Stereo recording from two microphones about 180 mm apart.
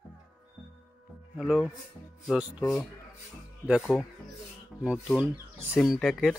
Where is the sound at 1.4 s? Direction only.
5° right (ahead or behind).